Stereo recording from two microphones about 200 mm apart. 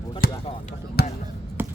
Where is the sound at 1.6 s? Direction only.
10° right (ahead or behind).